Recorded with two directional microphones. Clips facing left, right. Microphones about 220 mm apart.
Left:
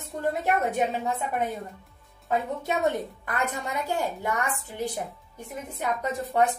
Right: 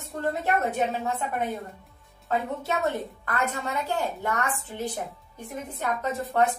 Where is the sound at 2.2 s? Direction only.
15° left (ahead or behind).